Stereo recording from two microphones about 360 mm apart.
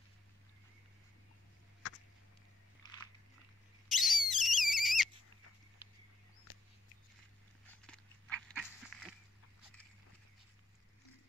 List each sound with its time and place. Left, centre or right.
3.9 s whistle: centre
6.5 s a sound: left
7.8 s dog: centre